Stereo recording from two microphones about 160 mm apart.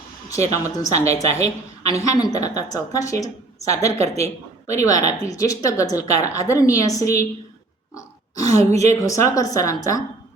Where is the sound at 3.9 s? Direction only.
40° right (ahead or behind).